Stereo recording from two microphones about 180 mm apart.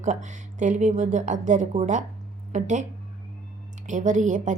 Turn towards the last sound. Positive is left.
turn(degrees=-45)  # may be behind; listen again after turning